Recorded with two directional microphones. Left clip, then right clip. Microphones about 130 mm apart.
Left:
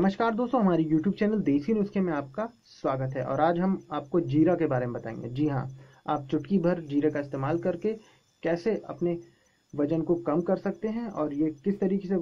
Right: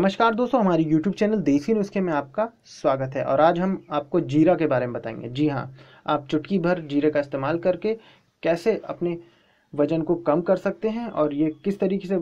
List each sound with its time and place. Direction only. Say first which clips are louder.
0.0 s speech: right 6 dB; 20° right (ahead or behind)